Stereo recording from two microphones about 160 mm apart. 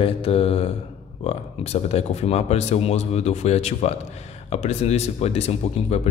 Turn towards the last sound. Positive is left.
turn(degrees=40)  # may be behind; listen again after turning